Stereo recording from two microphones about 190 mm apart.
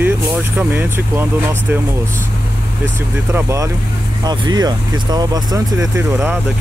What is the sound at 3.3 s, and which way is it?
Speech, 15° right (ahead or behind).